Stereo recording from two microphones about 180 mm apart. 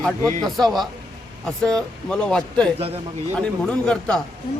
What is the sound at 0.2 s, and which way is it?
Speech, 20° left (ahead or behind).